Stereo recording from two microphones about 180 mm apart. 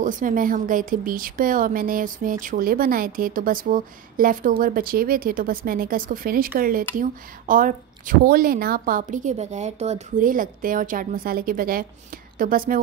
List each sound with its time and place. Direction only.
0.0 s speech: 45° right (ahead or behind)